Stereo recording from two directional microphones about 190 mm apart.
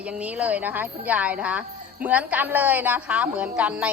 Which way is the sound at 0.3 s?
10° right (ahead or behind).